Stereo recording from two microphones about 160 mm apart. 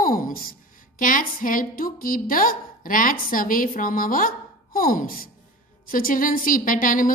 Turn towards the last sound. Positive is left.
turn(degrees=60)  # may be behind; listen again after turning